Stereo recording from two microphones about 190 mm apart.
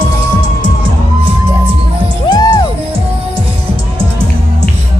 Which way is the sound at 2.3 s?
20° left (ahead or behind).